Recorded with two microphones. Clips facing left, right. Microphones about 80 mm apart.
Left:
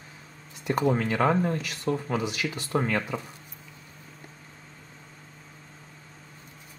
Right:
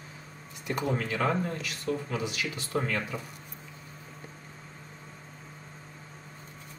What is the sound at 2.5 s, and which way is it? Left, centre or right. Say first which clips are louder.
Speech: left 3 dB; left.